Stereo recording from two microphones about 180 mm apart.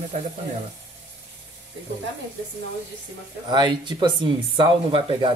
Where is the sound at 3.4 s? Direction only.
25° right (ahead or behind).